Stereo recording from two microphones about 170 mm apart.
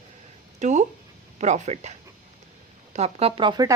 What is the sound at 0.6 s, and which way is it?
A woman's voice, 45° right (ahead or behind).